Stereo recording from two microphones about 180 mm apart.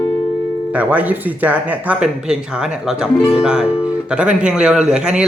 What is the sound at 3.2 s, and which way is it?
Speech, 30° left (ahead or behind).